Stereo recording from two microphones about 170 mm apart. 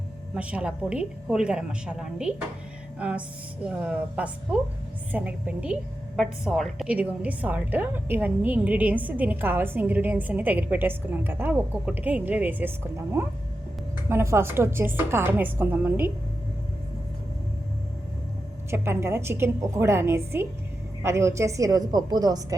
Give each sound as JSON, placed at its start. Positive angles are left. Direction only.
{"t": 0.3, "sound": "a woman's voice", "side_deg": -5}
{"t": 18.7, "sound": "a woman's voice", "side_deg": -15}